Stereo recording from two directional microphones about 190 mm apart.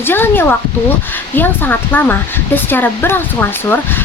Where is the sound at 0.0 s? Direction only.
10° left (ahead or behind).